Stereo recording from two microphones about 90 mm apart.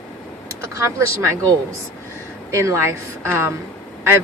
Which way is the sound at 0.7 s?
30° right (ahead or behind).